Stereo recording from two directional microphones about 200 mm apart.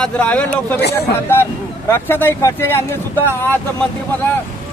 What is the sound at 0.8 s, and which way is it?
Speech, 55° left (ahead or behind).